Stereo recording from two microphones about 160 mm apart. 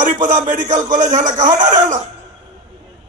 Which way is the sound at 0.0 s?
50° right (ahead or behind).